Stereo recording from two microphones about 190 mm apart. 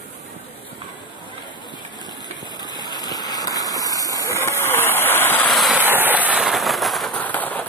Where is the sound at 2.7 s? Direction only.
20° left (ahead or behind); by 5.8 s centre (ahead or behind).